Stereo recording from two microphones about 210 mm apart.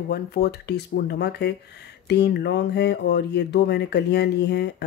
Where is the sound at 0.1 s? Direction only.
50° left (ahead or behind).